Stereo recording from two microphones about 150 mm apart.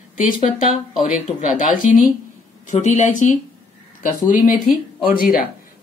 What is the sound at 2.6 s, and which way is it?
Speech, 55° left (ahead or behind).